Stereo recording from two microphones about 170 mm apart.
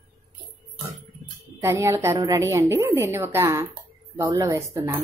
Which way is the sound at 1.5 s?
15° right (ahead or behind).